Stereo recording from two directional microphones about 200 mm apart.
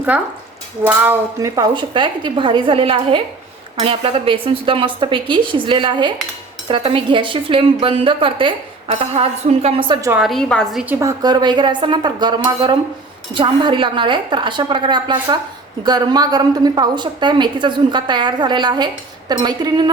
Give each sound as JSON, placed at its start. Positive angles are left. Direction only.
{"t": 0.9, "sound": "speech", "side_deg": -10}
{"t": 10.1, "sound": "a woman's voice", "side_deg": -5}
{"t": 11.0, "sound": "speech", "side_deg": -20}